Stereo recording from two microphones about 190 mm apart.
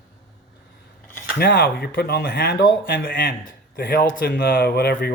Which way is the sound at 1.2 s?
55° left (ahead or behind).